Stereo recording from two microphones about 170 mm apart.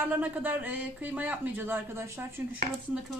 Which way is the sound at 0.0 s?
10° right (ahead or behind).